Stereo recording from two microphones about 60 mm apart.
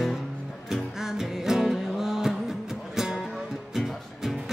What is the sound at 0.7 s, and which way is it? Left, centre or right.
Music, centre.